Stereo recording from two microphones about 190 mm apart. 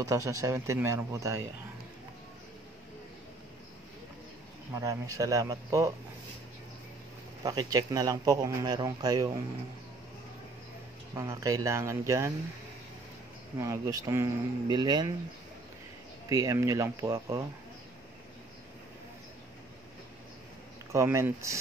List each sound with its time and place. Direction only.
0.0 s speech: 15° right (ahead or behind)
4.7 s speech: 15° right (ahead or behind)
7.4 s speech: 20° right (ahead or behind)
11.1 s speech: 15° right (ahead or behind)
13.6 s speech: 15° right (ahead or behind)
16.3 s speech: 15° right (ahead or behind)
20.9 s speech: 15° right (ahead or behind)